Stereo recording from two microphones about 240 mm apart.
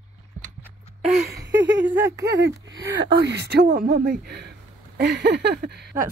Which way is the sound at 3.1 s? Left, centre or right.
Right.